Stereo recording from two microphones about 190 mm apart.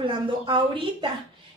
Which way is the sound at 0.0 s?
25° right (ahead or behind).